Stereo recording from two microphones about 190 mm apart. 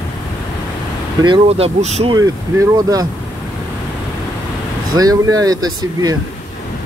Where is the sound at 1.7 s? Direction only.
35° right (ahead or behind).